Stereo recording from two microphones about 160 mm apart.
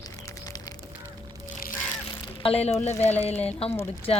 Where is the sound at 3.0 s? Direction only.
40° left (ahead or behind).